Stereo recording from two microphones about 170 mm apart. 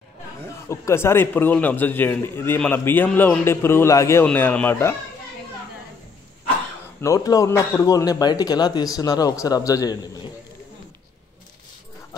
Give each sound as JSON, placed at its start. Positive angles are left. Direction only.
{"t": 0.7, "sound": "a man's voice", "side_deg": 15}
{"t": 7.0, "sound": "a man's voice", "side_deg": 20}